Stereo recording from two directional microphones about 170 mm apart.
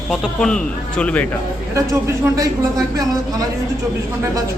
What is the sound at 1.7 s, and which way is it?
A man's voice, 15° right (ahead or behind).